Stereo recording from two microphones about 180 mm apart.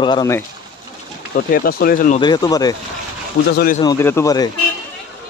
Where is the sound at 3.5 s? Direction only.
55° left (ahead or behind).